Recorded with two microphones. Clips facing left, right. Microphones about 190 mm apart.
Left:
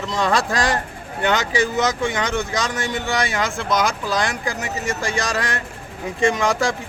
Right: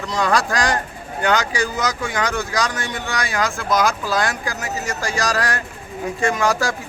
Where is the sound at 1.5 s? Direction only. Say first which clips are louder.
Left 3 dB; 25° left (ahead or behind).